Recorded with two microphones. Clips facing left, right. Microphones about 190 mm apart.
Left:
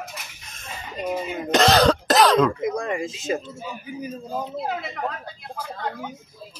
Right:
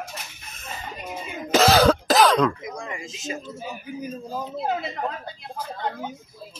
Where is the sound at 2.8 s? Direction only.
60° left (ahead or behind).